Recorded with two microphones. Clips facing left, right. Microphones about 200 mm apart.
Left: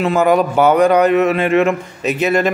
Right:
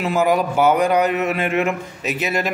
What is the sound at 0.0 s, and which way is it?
Speech, 60° left (ahead or behind).